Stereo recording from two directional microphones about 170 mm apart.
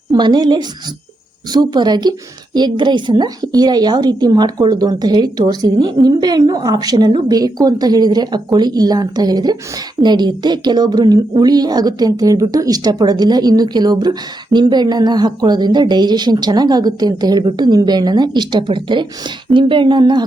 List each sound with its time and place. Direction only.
0.1 s speech: 25° right (ahead or behind)